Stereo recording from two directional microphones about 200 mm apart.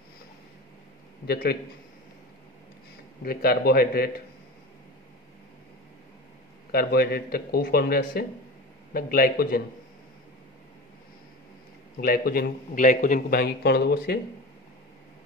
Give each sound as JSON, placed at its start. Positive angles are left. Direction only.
{"t": 1.2, "sound": "a man's voice", "side_deg": 50}
{"t": 3.3, "sound": "a man's voice", "side_deg": 50}
{"t": 6.7, "sound": "a man's voice", "side_deg": 50}
{"t": 12.0, "sound": "a man's voice", "side_deg": 50}